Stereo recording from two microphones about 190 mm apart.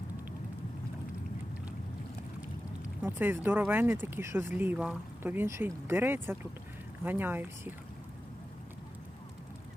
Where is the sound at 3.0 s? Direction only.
10° right (ahead or behind).